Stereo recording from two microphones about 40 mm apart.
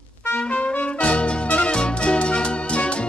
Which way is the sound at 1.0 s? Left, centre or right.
Left.